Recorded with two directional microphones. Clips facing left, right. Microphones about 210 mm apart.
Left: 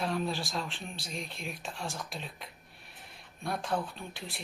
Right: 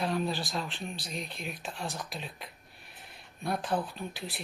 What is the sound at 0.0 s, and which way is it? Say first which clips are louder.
Speech: right 1 dB; centre (ahead or behind).